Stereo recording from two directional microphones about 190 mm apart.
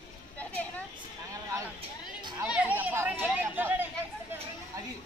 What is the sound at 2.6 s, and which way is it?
Chatter, 10° right (ahead or behind).